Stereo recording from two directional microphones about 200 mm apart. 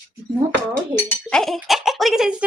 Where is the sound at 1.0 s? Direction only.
5° left (ahead or behind).